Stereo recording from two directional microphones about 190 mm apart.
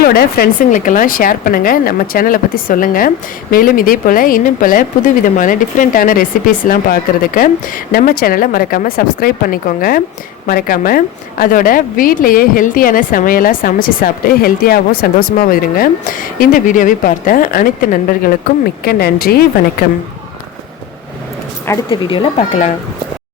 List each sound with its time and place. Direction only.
0.0 s a woman's voice: 50° left (ahead or behind)
21.8 s speech: 30° left (ahead or behind)